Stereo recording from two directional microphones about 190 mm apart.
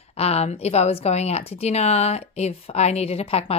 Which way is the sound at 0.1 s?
35° left (ahead or behind).